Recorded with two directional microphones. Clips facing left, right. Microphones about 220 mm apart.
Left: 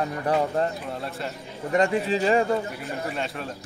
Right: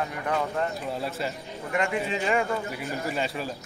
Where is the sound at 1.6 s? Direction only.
35° left (ahead or behind).